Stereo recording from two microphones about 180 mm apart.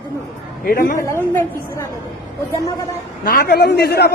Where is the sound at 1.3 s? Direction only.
10° left (ahead or behind).